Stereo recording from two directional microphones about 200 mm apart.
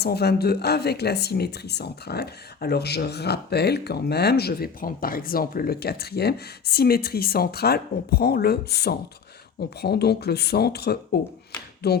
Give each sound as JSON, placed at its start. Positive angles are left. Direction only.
{"t": 0.0, "sound": "speech", "side_deg": 55}